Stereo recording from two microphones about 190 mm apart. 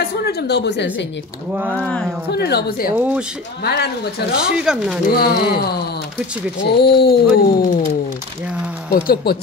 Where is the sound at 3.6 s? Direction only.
60° left (ahead or behind).